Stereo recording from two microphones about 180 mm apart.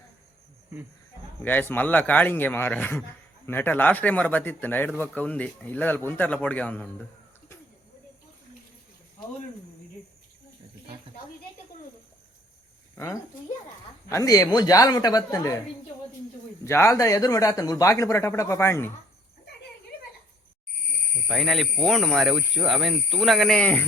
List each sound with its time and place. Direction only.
1.4 s speech: 10° left (ahead or behind)
14.1 s speech: 20° left (ahead or behind)
16.6 s speech: 15° left (ahead or behind)
21.2 s speech: centre (ahead or behind)